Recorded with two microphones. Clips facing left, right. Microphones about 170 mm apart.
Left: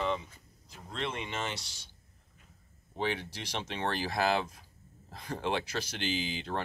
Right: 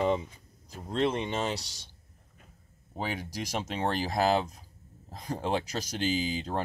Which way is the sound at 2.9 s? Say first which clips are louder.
Left 1 dB; 40° right (ahead or behind).